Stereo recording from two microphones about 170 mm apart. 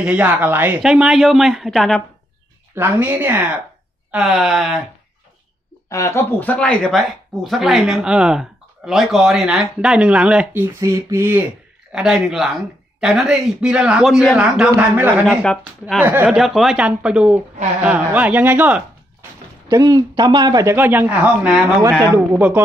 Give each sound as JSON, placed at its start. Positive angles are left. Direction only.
{"t": 0.0, "sound": "speech", "side_deg": -10}
{"t": 2.7, "sound": "speech", "side_deg": -10}
{"t": 5.9, "sound": "speech", "side_deg": 20}
{"t": 11.9, "sound": "speech", "side_deg": -5}
{"t": 19.7, "sound": "a man's voice", "side_deg": -25}